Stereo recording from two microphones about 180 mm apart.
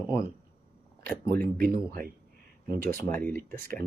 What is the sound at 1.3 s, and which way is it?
Speech, 55° right (ahead or behind).